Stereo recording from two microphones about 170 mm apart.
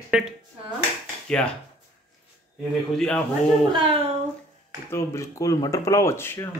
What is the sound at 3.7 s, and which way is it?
Speech, 30° right (ahead or behind).